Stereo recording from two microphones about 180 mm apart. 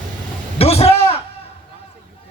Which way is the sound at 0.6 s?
35° left (ahead or behind).